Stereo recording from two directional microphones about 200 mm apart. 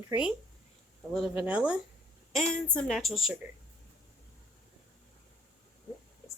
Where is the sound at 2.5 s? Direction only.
5° left (ahead or behind).